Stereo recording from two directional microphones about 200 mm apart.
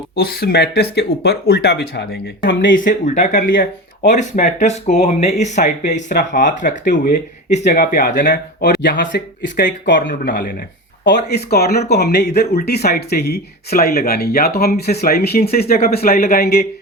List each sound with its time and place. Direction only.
0.2 s speech: 50° left (ahead or behind)
8.6 s speech: 60° left (ahead or behind)
9.9 s speech: 45° left (ahead or behind)
11.0 s speech: 55° left (ahead or behind)